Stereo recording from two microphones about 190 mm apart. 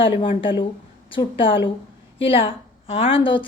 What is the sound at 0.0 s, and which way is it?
A woman's voice, 30° left (ahead or behind).